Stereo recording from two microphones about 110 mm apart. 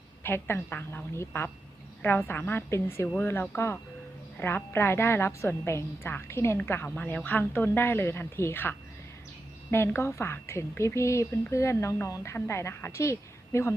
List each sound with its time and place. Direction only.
0.2 s a woman's voice: 20° left (ahead or behind)
9.7 s a woman's voice: 20° left (ahead or behind)